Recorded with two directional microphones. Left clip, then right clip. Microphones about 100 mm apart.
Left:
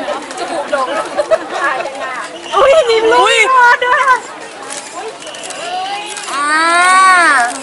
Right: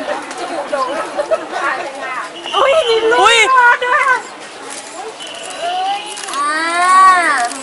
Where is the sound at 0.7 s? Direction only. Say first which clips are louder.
Left 2 dB; 15° left (ahead or behind).